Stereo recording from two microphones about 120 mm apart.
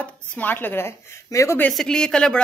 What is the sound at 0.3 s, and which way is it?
A woman's voice, 15° left (ahead or behind).